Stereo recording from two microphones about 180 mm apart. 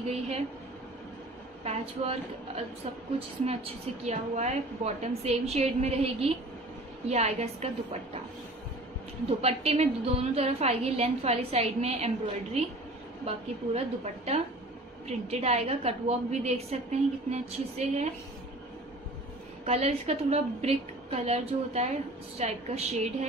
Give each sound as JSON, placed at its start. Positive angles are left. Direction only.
{"t": 0.0, "sound": "a woman's voice", "side_deg": -35}
{"t": 1.6, "sound": "a woman's voice", "side_deg": -35}
{"t": 9.4, "sound": "a woman's voice", "side_deg": -35}
{"t": 13.3, "sound": "a woman's voice", "side_deg": -35}
{"t": 19.6, "sound": "a woman's voice", "side_deg": -35}